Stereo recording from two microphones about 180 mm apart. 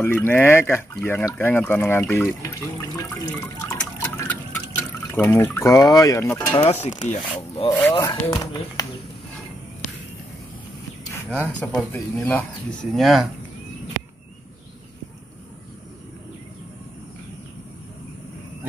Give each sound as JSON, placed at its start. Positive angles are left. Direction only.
{"t": 0.0, "sound": "speech", "side_deg": 15}
{"t": 3.3, "sound": "liquid", "side_deg": 15}
{"t": 6.6, "sound": "a sound", "side_deg": 40}
{"t": 7.2, "sound": "speech", "side_deg": 25}
{"t": 11.6, "sound": "speech", "side_deg": 10}